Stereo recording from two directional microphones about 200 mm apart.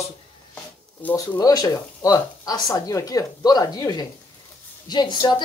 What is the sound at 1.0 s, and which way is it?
A woman's voice, 10° left (ahead or behind).